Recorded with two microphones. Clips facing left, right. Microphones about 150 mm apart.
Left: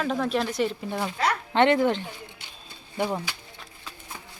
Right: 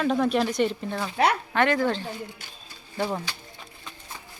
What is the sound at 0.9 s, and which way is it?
Speech, 15° left (ahead or behind).